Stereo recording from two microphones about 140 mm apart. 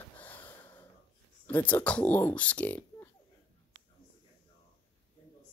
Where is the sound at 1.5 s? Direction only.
10° left (ahead or behind).